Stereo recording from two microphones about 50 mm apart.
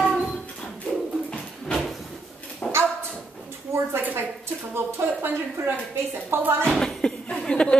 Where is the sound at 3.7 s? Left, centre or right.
Right.